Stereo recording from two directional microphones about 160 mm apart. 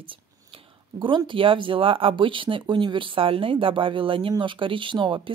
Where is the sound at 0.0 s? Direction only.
35° right (ahead or behind).